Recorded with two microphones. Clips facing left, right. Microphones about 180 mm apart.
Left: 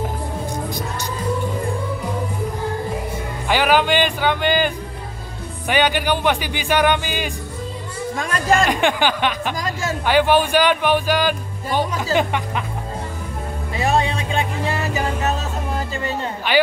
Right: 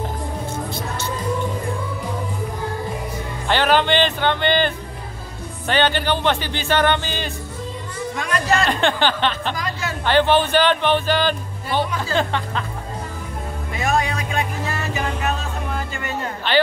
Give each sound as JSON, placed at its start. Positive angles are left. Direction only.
{"t": 0.7, "sound": "music", "side_deg": 15}
{"t": 3.4, "sound": "speech", "side_deg": 10}
{"t": 8.2, "sound": "speech", "side_deg": 45}
{"t": 8.6, "sound": "speech", "side_deg": 10}
{"t": 9.6, "sound": "speech", "side_deg": 45}
{"t": 10.0, "sound": "speech", "side_deg": 10}
{"t": 13.7, "sound": "music", "side_deg": 30}
{"t": 16.5, "sound": "a sound", "side_deg": 10}